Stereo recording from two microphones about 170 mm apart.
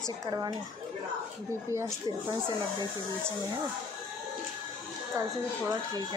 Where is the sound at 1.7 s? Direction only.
15° right (ahead or behind).